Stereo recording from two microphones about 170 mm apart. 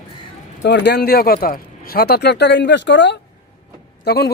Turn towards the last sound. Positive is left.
turn(degrees=70)  # may be behind; listen again after turning